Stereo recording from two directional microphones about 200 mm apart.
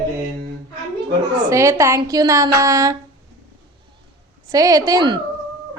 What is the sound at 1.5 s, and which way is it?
A woman's voice, 15° right (ahead or behind).